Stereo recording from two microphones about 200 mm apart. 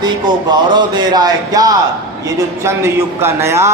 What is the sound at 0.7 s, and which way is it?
A man's voice, 20° right (ahead or behind).